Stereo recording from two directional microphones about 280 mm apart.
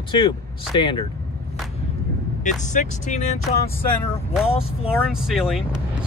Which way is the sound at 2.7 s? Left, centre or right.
Left.